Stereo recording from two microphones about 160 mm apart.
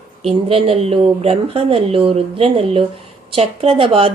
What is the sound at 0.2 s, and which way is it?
Speech, 40° right (ahead or behind).